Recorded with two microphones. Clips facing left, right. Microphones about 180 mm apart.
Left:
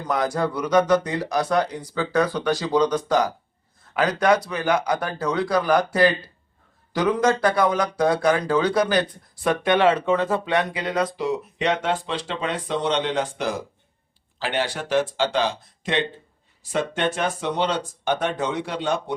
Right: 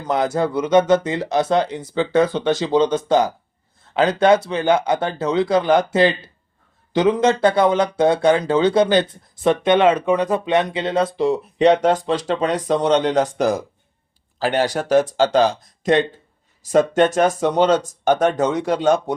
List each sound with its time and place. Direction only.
0.1 s speech: 25° right (ahead or behind); by 19.1 s 45° right (ahead or behind)